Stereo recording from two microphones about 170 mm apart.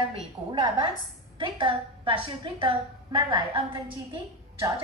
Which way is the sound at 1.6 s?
30° right (ahead or behind).